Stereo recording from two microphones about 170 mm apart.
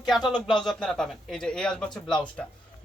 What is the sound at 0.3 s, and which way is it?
Speech, centre (ahead or behind).